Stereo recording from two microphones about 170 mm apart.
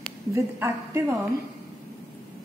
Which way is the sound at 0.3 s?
15° right (ahead or behind).